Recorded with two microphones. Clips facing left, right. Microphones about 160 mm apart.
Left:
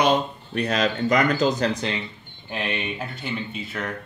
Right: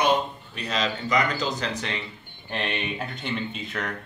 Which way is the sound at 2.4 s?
5° left (ahead or behind).